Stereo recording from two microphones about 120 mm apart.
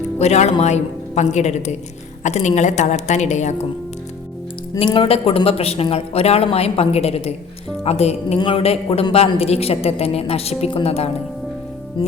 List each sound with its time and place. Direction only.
0.2 s a woman's voice: 65° left (ahead or behind)
4.8 s a man's voice: 45° left (ahead or behind)
12.0 s a man's voice: 45° left (ahead or behind)